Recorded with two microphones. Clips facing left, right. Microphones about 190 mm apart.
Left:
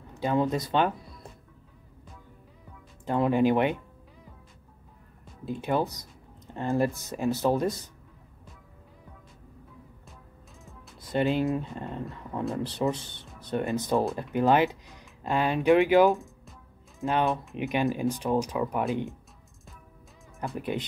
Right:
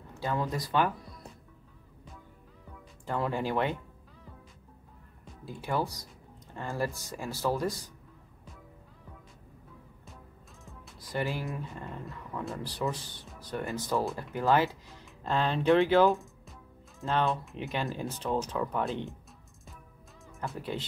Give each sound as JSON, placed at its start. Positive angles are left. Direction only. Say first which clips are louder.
{"t": 0.2, "sound": "speech", "louder": "left 6 dB", "side_deg": 20}
{"t": 3.1, "sound": "speech", "louder": "left 8 dB", "side_deg": 20}
{"t": 5.4, "sound": "speech", "louder": "left 5 dB", "side_deg": 20}
{"t": 10.6, "sound": "music", "louder": "even", "side_deg": 0}
{"t": 11.0, "sound": "speech", "louder": "left 8 dB", "side_deg": 25}
{"t": 16.1, "sound": "music", "louder": "left 2 dB", "side_deg": 0}
{"t": 17.0, "sound": "speech", "louder": "left 3 dB", "side_deg": 15}
{"t": 20.5, "sound": "speech", "louder": "left 6 dB", "side_deg": 15}